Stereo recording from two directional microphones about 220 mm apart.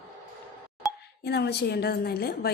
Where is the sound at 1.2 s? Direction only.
50° left (ahead or behind).